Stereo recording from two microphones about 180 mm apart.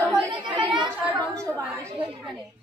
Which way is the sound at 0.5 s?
25° right (ahead or behind).